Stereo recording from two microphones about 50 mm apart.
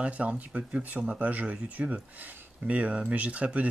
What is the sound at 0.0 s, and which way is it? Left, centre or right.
Speech, right.